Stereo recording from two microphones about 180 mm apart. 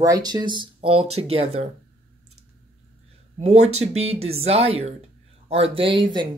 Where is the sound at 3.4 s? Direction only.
35° right (ahead or behind).